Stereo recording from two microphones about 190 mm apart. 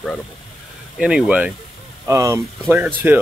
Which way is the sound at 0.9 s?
5° right (ahead or behind).